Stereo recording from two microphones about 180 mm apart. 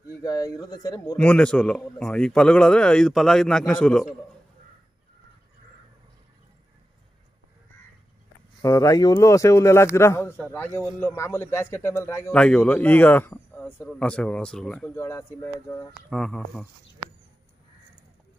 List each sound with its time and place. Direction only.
0.2 s a man's voice: 20° left (ahead or behind)
1.1 s a man's voice: 5° left (ahead or behind)
8.6 s speech: 20° left (ahead or behind)
12.3 s speech: 5° left (ahead or behind)
15.0 s speech: 15° left (ahead or behind)
15.9 s a man's voice: 5° left (ahead or behind)